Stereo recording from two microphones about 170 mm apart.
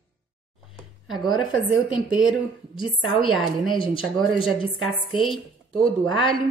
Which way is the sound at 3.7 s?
30° left (ahead or behind).